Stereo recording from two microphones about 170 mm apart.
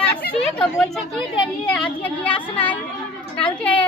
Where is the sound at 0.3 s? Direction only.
5° left (ahead or behind).